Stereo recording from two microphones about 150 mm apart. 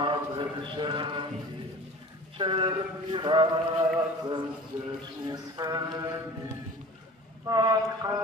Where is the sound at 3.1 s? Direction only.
30° right (ahead or behind).